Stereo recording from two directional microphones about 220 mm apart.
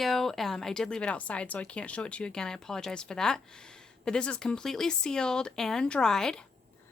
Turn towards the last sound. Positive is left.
turn(degrees=5)  # may be behind; listen again after turning